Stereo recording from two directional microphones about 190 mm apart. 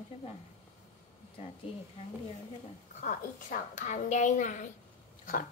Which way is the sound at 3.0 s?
45° left (ahead or behind).